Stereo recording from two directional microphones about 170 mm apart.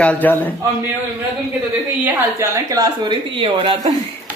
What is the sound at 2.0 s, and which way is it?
Speech, 20° right (ahead or behind).